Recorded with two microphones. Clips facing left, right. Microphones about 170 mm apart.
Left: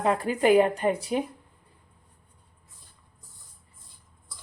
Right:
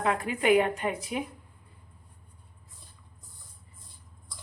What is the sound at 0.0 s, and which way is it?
Speech, 35° left (ahead or behind).